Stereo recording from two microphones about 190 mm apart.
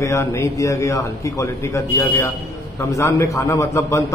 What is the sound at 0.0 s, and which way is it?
A man's voice, 15° left (ahead or behind).